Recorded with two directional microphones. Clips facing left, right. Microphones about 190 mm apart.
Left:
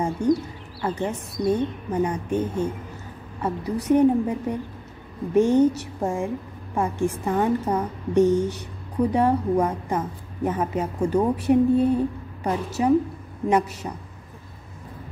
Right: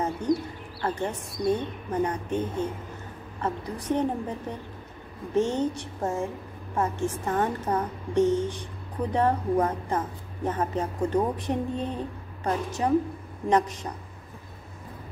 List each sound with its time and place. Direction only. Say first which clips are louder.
0.2 s a woman's voice: left 4 dB; 10° left (ahead or behind)